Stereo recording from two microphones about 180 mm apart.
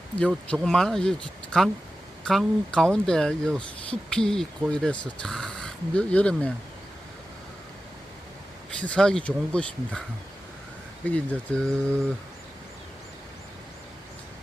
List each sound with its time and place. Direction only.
0.3 s speech: centre (ahead or behind)
8.8 s speech: 5° left (ahead or behind)
11.0 s speech: 10° left (ahead or behind)